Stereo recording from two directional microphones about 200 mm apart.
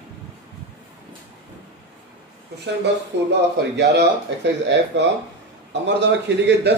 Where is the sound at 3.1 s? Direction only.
60° right (ahead or behind).